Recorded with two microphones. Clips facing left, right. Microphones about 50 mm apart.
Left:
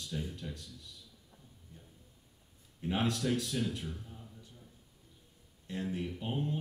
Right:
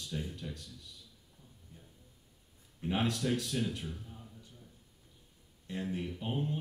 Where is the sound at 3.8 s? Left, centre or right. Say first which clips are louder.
Even; centre.